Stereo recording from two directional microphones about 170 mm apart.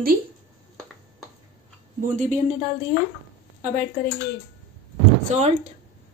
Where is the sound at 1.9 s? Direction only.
45° right (ahead or behind).